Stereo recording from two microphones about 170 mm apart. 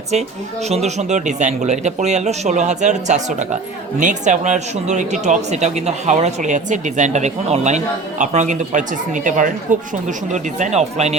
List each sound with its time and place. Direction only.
0.7 s speech: 40° right (ahead or behind)